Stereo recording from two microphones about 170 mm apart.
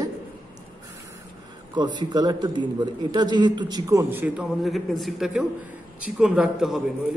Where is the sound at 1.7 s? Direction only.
25° right (ahead or behind); by 6.8 s centre (ahead or behind).